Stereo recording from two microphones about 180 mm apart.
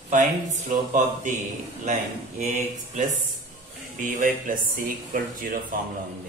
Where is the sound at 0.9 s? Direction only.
45° right (ahead or behind).